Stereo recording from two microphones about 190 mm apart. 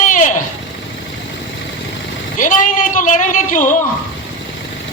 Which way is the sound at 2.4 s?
45° left (ahead or behind).